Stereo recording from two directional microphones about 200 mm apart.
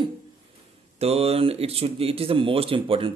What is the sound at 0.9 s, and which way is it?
Speech, 30° right (ahead or behind).